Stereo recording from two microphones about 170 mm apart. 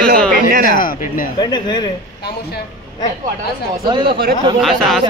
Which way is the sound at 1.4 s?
25° left (ahead or behind).